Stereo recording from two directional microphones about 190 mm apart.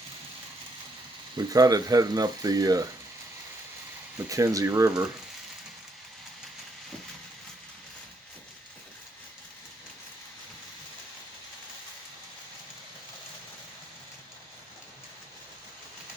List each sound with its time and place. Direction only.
1.4 s speech: 20° right (ahead or behind)
4.3 s speech: 15° right (ahead or behind)